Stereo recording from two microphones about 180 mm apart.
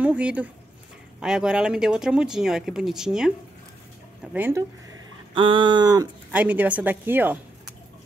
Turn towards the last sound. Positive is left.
turn(degrees=-10)  # may be behind; listen again after turning